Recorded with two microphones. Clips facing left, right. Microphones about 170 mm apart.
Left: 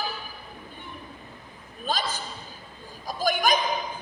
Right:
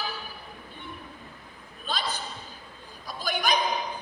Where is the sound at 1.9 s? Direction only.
45° left (ahead or behind).